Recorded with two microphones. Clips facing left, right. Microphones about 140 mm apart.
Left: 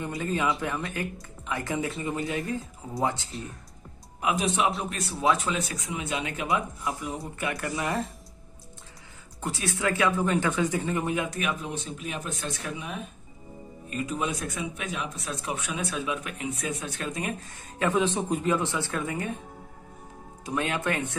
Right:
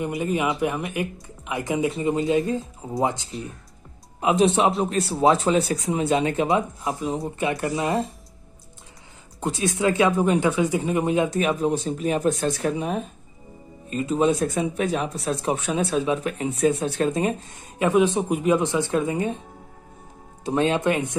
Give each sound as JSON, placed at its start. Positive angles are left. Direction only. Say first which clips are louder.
{"t": 0.0, "sound": "speech", "louder": "right 4 dB", "side_deg": -15}
{"t": 4.2, "sound": "speech", "louder": "right 7 dB", "side_deg": -25}
{"t": 9.4, "sound": "speech", "louder": "right 6 dB", "side_deg": -20}
{"t": 20.4, "sound": "speech", "louder": "right 8 dB", "side_deg": -25}